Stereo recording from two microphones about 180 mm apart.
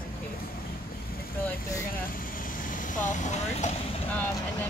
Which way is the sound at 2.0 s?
50° left (ahead or behind).